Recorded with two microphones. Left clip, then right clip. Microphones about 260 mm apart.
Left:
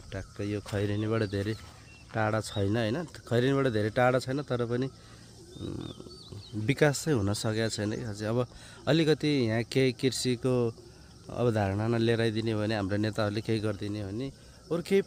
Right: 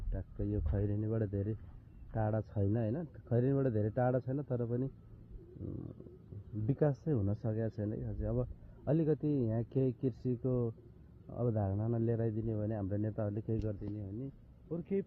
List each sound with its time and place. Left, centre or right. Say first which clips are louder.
0.1 s speech: left 6 dB; centre; by 4.9 s left
6.7 s speech: left 8 dB; left
6.9 s speech: left 8 dB; left
9.8 s speech: left 8 dB; centre
11.3 s speech: left 9 dB; left